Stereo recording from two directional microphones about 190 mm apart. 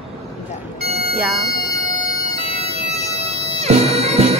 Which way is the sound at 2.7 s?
30° right (ahead or behind).